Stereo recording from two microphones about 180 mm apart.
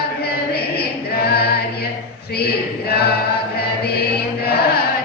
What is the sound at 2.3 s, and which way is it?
Chant, 60° left (ahead or behind).